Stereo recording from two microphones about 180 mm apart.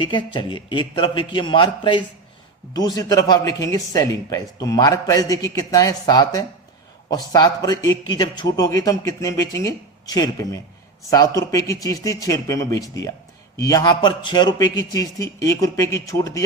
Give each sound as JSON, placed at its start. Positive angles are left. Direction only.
{"t": 0.0, "sound": "a man's voice", "side_deg": 25}